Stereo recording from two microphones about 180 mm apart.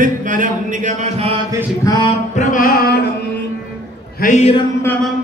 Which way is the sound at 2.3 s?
45° left (ahead or behind).